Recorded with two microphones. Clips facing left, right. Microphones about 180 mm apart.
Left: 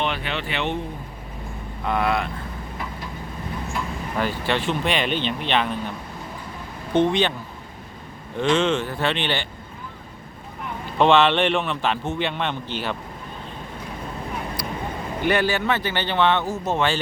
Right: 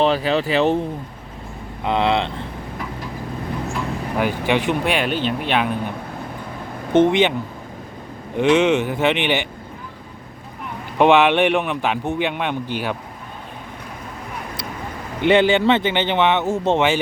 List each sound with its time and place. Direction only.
0.0 s speech: 35° right (ahead or behind)
1.8 s speech: 20° right (ahead or behind)
4.2 s a man's voice: 15° right (ahead or behind)
6.9 s speech: 20° right (ahead or behind)
8.4 s a man's voice: 15° right (ahead or behind)
10.9 s a man's voice: 15° right (ahead or behind)
15.2 s speech: 25° right (ahead or behind)